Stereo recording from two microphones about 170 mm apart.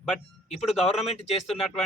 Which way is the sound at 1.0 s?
40° left (ahead or behind).